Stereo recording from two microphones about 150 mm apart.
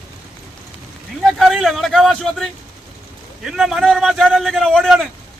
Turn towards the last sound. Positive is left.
turn(degrees=0)  # may be behind; listen again after turning